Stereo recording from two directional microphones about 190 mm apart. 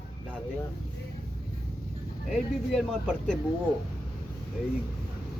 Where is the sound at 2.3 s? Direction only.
Centre (ahead or behind).